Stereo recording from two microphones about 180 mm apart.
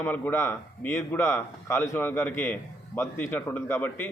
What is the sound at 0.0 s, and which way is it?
Speech, 10° left (ahead or behind).